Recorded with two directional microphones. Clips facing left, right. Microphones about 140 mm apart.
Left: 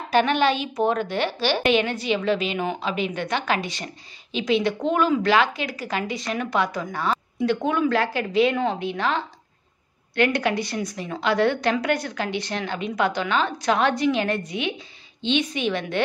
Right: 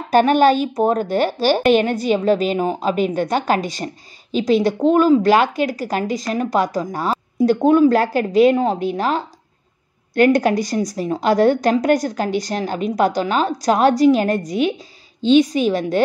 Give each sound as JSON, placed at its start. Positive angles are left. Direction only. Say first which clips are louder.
{"t": 0.1, "sound": "a woman's voice", "louder": "right 7 dB", "side_deg": -45}